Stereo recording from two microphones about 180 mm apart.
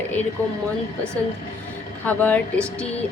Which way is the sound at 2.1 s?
10° left (ahead or behind).